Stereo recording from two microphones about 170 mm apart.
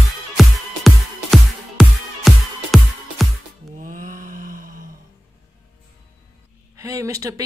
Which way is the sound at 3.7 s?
50° right (ahead or behind).